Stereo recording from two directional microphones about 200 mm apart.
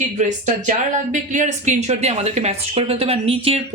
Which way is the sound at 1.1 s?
40° right (ahead or behind).